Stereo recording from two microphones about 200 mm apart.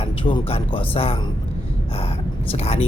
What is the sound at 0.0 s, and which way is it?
A man's voice, 25° left (ahead or behind).